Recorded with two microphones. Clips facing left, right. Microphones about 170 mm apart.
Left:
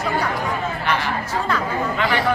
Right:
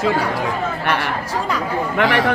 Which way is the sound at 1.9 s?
85° right.